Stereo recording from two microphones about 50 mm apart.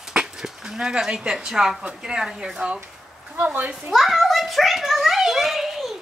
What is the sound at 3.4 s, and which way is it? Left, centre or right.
Speech, right.